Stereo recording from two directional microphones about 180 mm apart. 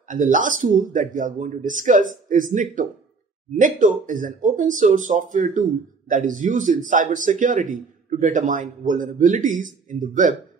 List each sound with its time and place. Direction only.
0.1 s speech: 45° right (ahead or behind)